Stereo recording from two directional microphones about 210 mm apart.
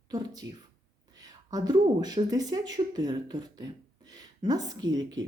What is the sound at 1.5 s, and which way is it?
A woman's voice, 20° right (ahead or behind).